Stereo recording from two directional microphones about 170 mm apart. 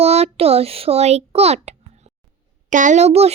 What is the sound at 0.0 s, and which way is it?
A child's voice, 35° right (ahead or behind).